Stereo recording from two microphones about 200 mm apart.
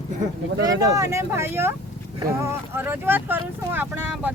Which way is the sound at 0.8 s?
15° right (ahead or behind).